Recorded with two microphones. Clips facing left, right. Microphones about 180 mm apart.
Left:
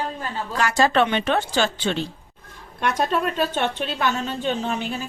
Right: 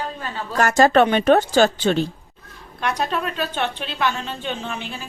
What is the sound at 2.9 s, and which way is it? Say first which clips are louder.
A woman's voice: left 2 dB; 45° left (ahead or behind).